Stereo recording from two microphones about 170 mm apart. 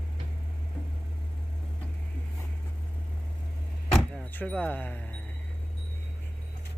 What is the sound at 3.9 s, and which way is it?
Speech, 10° left (ahead or behind).